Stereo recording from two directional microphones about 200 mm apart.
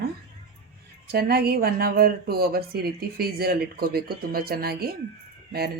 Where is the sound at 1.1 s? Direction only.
50° right (ahead or behind).